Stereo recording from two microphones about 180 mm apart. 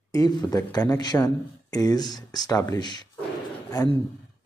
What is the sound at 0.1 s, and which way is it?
Speech, 20° left (ahead or behind).